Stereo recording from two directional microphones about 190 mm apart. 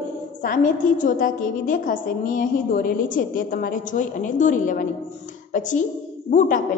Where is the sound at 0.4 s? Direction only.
45° left (ahead or behind).